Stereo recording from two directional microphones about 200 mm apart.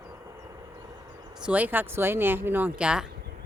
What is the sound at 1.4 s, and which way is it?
Speech, 5° right (ahead or behind).